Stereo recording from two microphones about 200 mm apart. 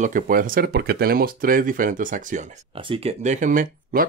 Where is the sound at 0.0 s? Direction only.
40° right (ahead or behind).